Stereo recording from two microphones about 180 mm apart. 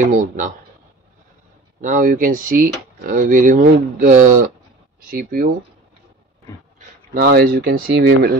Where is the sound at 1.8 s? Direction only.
50° right (ahead or behind).